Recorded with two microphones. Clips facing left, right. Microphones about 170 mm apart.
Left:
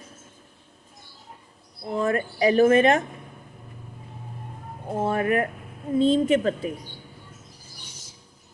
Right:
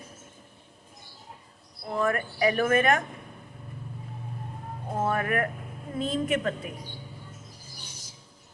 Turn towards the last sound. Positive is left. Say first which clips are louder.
# left 6 dB
turn(degrees=30)  # may be behind; listen again after turning